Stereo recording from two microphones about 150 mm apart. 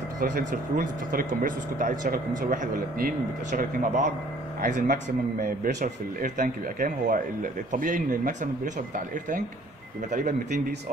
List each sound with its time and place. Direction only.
0.2 s speech: 65° right (ahead or behind)
10.1 s speech: 65° right (ahead or behind)